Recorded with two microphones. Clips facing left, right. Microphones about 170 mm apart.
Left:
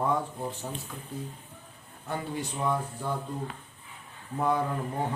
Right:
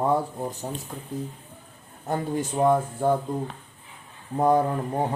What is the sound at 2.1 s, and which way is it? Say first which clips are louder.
Speech: right 7 dB; 45° right (ahead or behind).